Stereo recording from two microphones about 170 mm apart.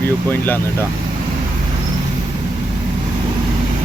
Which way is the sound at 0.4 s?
10° left (ahead or behind).